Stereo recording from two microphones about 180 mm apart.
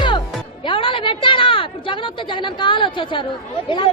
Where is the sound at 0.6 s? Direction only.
30° left (ahead or behind).